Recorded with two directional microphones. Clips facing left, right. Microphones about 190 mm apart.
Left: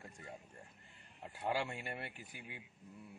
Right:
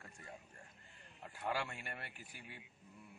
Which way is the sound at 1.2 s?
20° left (ahead or behind).